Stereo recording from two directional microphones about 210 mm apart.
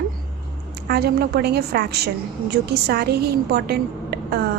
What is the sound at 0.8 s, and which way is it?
A woman's voice, 50° right (ahead or behind).